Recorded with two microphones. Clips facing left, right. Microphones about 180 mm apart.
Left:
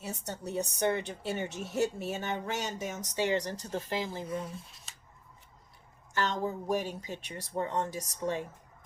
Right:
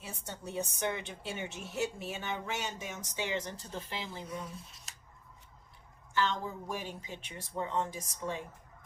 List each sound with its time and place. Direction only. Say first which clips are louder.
0.0 s a woman's voice: left 5 dB; 40° left (ahead or behind)
4.4 s speech: left 3 dB; centre (ahead or behind)
6.1 s a woman's voice: left 1 dB; 40° left (ahead or behind)